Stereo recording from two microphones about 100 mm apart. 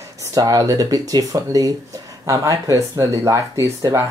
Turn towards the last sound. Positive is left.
turn(degrees=-35)  # may be behind; listen again after turning